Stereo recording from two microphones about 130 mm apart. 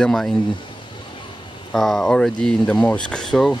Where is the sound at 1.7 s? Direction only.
Centre (ahead or behind).